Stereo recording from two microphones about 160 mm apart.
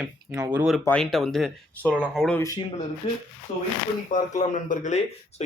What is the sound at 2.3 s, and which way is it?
Speech, 20° left (ahead or behind).